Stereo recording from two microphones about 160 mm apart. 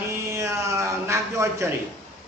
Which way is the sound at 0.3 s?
20° right (ahead or behind).